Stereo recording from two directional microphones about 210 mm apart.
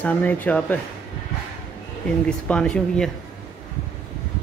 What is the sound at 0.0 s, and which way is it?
Speech, 10° left (ahead or behind).